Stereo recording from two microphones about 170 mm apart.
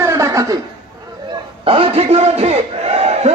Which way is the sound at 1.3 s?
30° right (ahead or behind).